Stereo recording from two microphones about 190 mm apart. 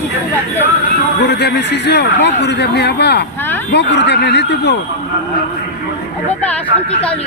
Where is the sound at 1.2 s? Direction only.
60° left (ahead or behind).